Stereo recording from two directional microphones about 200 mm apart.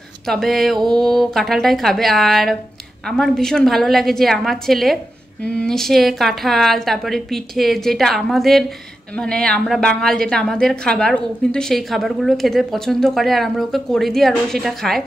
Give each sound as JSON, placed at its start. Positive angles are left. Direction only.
{"t": 0.3, "sound": "a woman's voice", "side_deg": 0}
{"t": 0.7, "sound": "mantra", "side_deg": -20}
{"t": 1.0, "sound": "a woman's voice", "side_deg": 0}